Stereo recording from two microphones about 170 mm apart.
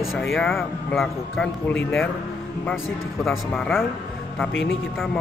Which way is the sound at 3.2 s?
Centre (ahead or behind).